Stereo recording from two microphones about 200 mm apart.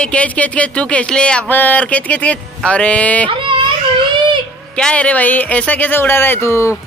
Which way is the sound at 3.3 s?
25° right (ahead or behind).